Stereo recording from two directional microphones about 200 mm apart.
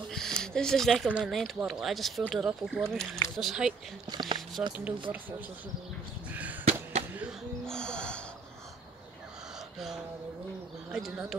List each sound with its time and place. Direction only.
0.1 s speech: 5° left (ahead or behind)
4.1 s speech: 20° right (ahead or behind)
4.6 s speech: 10° right (ahead or behind)
6.6 s a sound: 30° right (ahead or behind)
7.2 s music: centre (ahead or behind)
9.8 s speech: centre (ahead or behind)